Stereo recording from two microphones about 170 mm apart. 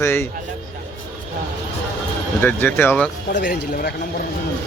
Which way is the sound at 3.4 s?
60° left (ahead or behind).